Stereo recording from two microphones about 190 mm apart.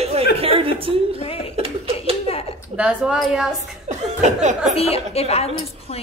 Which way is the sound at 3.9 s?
40° right (ahead or behind).